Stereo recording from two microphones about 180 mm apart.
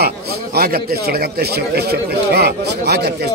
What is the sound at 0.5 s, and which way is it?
A man's voice, 60° right (ahead or behind).